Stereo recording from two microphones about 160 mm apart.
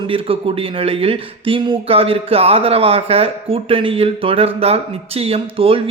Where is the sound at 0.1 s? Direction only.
35° right (ahead or behind).